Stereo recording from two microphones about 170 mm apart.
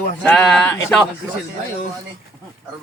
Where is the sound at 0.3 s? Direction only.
5° left (ahead or behind).